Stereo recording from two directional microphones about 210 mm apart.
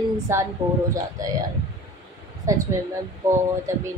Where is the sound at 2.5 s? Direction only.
15° right (ahead or behind).